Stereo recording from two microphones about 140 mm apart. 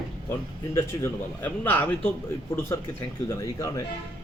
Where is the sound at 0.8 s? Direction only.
20° left (ahead or behind).